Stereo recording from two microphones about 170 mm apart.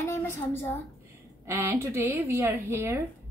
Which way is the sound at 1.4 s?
15° right (ahead or behind).